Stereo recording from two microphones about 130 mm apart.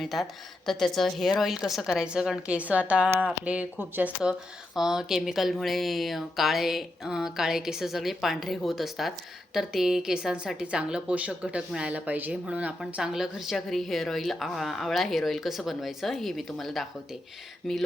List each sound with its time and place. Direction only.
0.0 s a woman's voice: centre (ahead or behind)